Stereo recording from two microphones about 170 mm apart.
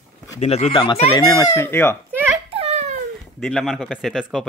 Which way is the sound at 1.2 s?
20° left (ahead or behind).